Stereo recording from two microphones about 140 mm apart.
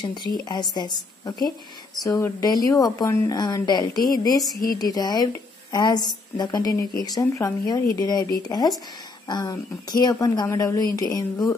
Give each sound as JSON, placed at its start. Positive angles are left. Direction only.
{"t": 0.0, "sound": "speech", "side_deg": 30}